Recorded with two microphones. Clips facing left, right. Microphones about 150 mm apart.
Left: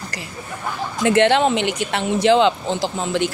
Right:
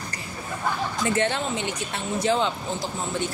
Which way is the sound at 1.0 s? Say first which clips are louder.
Left 11 dB; 85° left.